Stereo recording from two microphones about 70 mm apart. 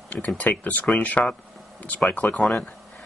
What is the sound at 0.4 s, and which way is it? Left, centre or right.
Speech, left.